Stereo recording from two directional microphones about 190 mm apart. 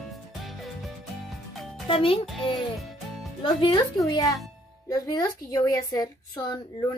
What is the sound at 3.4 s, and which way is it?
Speech, 25° left (ahead or behind).